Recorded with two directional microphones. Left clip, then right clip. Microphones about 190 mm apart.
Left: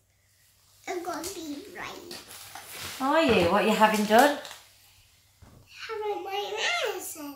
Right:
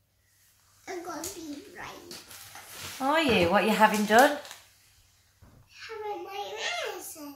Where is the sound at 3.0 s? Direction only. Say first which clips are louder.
Left 2 dB; 20° right (ahead or behind).